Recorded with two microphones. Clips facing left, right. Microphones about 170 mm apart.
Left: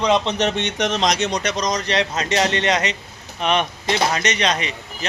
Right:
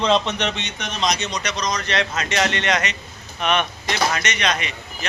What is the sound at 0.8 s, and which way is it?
Speech, 90° left.